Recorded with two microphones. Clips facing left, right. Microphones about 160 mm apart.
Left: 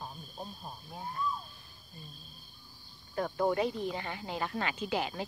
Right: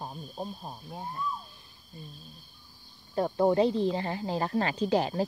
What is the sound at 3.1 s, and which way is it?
Speech, 30° right (ahead or behind).